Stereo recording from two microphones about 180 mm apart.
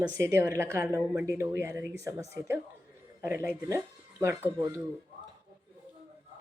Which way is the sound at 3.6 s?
15° right (ahead or behind).